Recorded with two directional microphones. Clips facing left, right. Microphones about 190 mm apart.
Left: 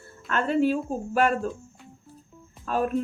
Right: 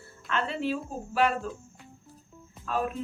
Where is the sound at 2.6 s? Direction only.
45° left (ahead or behind).